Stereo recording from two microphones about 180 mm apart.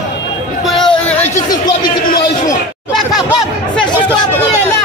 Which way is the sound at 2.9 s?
Centre (ahead or behind).